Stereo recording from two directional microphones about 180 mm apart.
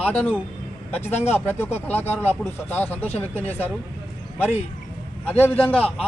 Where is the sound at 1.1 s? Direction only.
35° left (ahead or behind).